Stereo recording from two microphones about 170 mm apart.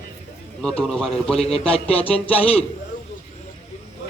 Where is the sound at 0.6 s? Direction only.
5° left (ahead or behind).